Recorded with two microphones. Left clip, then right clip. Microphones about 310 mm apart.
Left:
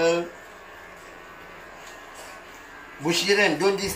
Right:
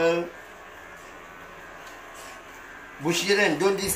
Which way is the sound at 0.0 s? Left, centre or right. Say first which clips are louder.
Left 1 dB; centre.